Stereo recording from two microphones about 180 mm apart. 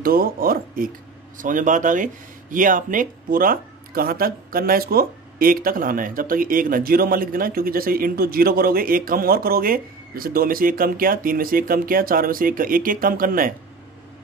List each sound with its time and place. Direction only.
0.0 s speech: 55° right (ahead or behind)